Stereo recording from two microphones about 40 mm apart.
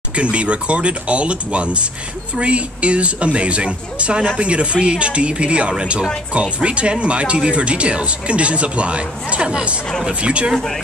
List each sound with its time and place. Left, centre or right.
0.1 s speech: right